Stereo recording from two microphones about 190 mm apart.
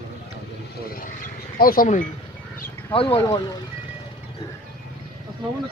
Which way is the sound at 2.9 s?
30° left (ahead or behind).